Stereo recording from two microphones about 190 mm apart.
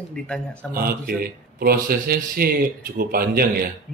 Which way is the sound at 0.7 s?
50° right (ahead or behind).